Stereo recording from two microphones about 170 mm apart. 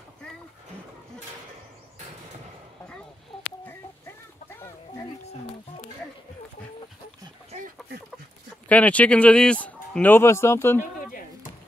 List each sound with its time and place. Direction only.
7.5 s chicken: 55° right (ahead or behind)
8.6 s speech: 10° left (ahead or behind)